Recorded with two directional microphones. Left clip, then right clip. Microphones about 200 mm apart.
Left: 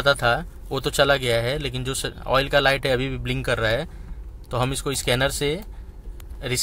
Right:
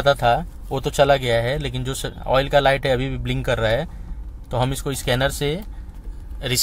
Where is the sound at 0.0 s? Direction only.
Centre (ahead or behind).